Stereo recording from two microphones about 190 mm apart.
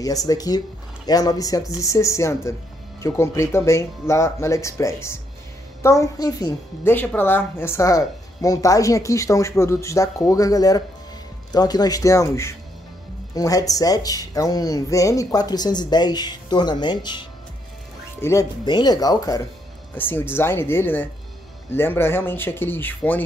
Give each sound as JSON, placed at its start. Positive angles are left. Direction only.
{"t": 0.0, "sound": "a woman's voice", "side_deg": 20}